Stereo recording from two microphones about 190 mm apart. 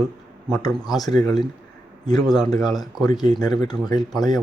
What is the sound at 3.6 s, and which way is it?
Speech, 20° left (ahead or behind).